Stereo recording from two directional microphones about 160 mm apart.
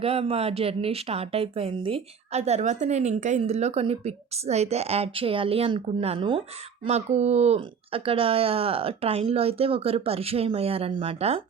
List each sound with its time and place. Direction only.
0.0 s speech: 40° right (ahead or behind)
6.8 s speech: 45° right (ahead or behind)